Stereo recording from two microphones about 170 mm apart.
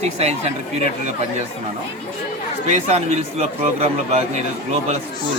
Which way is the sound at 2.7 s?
40° right (ahead or behind).